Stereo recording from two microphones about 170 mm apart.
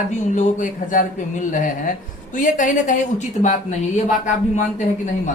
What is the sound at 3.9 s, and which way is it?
Speech, 45° left (ahead or behind).